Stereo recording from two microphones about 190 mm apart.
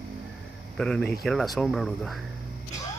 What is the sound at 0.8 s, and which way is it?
Speech, 5° left (ahead or behind).